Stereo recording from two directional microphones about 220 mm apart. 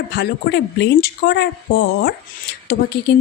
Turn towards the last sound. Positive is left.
turn(degrees=50)  # may be behind; listen again after turning